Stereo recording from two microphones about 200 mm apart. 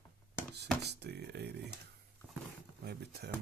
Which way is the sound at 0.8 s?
55° right (ahead or behind).